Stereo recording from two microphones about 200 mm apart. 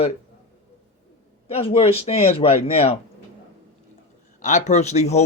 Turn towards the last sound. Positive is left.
turn(degrees=35)  # may be behind; listen again after turning